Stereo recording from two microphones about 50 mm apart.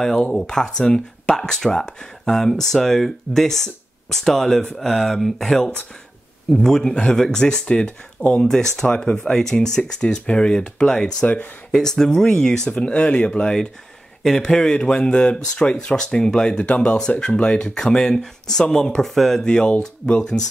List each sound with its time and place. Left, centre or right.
0.0 s speech: centre
8.4 s speech: centre
16.6 s speech: left; by 19.4 s centre
19.4 s speech: centre